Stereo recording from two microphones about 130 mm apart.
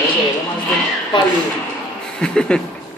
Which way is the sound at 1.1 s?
35° left (ahead or behind).